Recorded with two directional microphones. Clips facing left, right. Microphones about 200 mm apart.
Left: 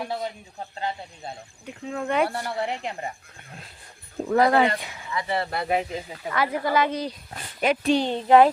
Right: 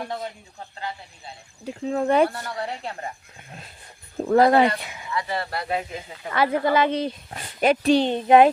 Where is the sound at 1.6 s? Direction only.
35° right (ahead or behind).